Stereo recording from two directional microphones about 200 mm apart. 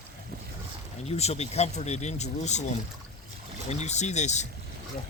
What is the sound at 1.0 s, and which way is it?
Speech, 30° left (ahead or behind).